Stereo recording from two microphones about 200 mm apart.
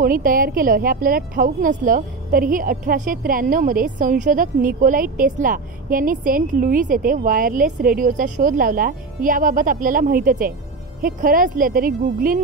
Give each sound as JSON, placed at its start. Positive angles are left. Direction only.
{"t": 0.0, "sound": "a woman's voice", "side_deg": -45}